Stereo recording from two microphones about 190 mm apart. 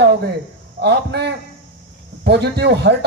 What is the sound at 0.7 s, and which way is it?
A man's voice, 60° right (ahead or behind).